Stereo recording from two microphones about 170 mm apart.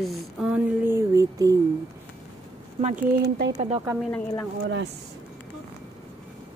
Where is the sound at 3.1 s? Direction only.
70° right (ahead or behind).